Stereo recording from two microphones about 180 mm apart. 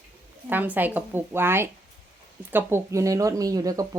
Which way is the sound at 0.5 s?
10° right (ahead or behind).